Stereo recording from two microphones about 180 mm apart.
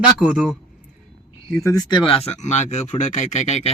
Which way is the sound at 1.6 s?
20° left (ahead or behind).